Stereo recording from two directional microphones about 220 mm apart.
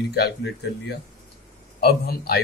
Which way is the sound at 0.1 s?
50° left (ahead or behind).